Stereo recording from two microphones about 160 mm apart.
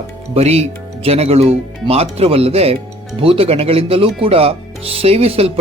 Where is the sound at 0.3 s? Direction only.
40° right (ahead or behind).